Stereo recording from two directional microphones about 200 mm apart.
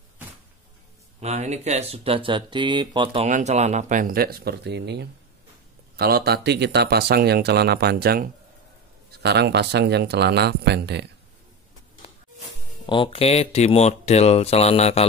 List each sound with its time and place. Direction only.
1.2 s speech: 35° right (ahead or behind)
3.3 s speech: 35° right (ahead or behind); by 11.1 s 55° right (ahead or behind)
12.8 s speech: 25° left (ahead or behind)